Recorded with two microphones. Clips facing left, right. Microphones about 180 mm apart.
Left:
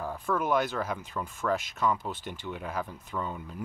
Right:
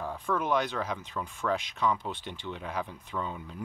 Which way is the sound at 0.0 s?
5° left (ahead or behind).